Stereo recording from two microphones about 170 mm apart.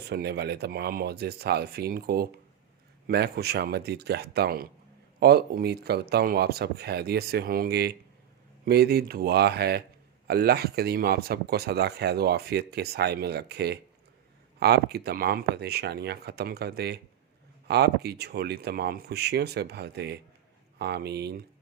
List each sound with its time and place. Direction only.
0.0 s speech: 70° right (ahead or behind)